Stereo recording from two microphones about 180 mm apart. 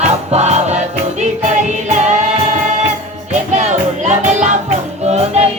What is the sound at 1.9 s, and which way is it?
Music, 40° right (ahead or behind).